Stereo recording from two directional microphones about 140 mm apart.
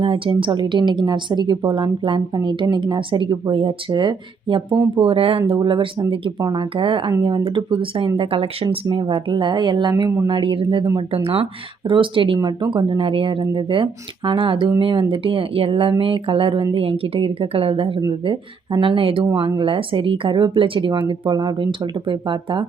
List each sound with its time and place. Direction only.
0.0 s speech: 40° right (ahead or behind)